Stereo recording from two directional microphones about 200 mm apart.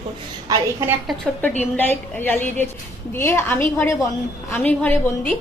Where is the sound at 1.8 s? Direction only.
10° left (ahead or behind).